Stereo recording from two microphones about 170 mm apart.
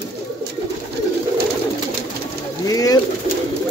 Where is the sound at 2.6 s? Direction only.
20° left (ahead or behind).